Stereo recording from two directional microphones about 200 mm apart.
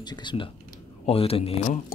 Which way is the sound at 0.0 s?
20° left (ahead or behind).